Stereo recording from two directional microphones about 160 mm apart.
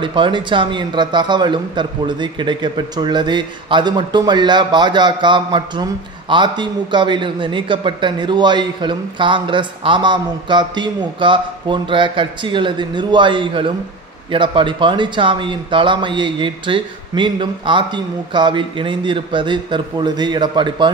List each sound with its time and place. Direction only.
0.0 s a man's voice: 30° right (ahead or behind)